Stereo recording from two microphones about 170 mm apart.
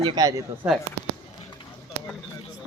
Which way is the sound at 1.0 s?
75° right (ahead or behind).